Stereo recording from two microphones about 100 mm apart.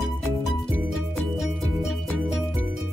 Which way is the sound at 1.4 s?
5° right (ahead or behind).